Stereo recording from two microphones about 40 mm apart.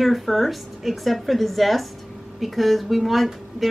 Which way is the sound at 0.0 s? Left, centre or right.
Centre.